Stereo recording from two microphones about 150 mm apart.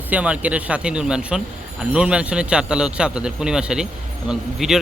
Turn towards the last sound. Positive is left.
turn(degrees=-5)  # may be behind; listen again after turning